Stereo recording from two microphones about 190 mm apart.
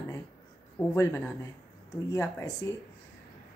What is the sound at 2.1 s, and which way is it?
Speech, 15° left (ahead or behind).